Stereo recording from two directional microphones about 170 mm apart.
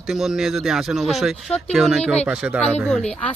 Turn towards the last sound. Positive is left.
turn(degrees=5)  # may be behind; listen again after turning